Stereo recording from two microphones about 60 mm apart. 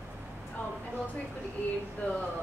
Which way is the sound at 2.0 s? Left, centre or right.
Left.